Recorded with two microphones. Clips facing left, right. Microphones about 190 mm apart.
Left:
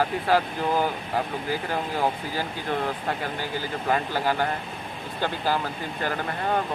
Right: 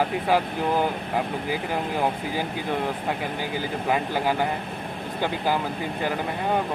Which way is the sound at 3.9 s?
15° right (ahead or behind).